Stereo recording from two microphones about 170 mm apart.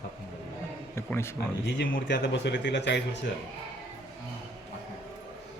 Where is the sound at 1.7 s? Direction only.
70° left (ahead or behind); by 3.0 s 90° left.